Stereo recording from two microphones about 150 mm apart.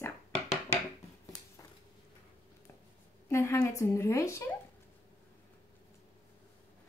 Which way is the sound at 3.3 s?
15° left (ahead or behind).